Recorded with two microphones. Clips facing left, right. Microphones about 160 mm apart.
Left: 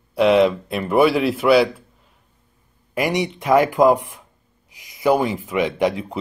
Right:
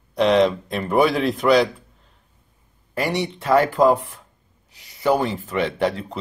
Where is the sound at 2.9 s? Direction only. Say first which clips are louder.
Left 2 dB; 15° left (ahead or behind).